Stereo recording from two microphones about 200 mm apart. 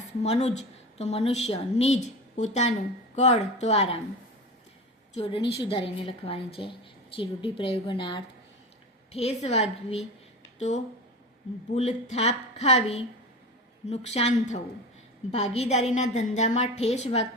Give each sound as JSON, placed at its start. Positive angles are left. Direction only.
{"t": 0.2, "sound": "a woman's voice", "side_deg": 30}
{"t": 5.1, "sound": "a woman's voice", "side_deg": 30}
{"t": 11.7, "sound": "a woman's voice", "side_deg": 30}